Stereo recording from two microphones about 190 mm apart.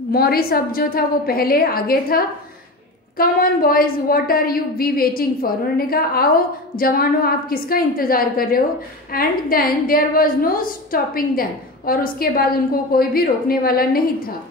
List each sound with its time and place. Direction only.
0.1 s a woman's voice: 55° left (ahead or behind)